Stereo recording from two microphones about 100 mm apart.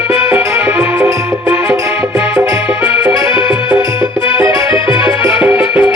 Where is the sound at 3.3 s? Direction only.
60° left (ahead or behind).